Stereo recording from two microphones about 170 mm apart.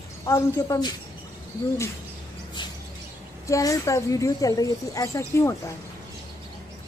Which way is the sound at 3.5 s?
20° left (ahead or behind).